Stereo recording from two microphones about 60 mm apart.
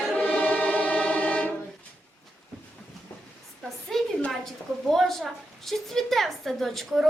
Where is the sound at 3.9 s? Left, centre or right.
Centre.